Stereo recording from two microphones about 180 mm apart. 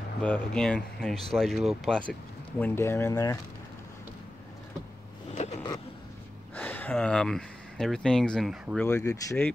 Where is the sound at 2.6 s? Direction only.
15° left (ahead or behind).